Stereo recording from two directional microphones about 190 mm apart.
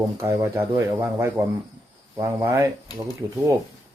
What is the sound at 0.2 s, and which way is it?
Speech, 15° right (ahead or behind).